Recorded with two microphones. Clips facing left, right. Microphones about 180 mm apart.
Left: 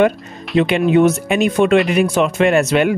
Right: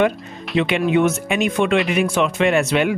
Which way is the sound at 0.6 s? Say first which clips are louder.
Left 4 dB; 40° left (ahead or behind).